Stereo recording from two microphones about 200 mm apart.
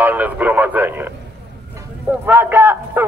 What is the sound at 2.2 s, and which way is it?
Speech, 10° right (ahead or behind).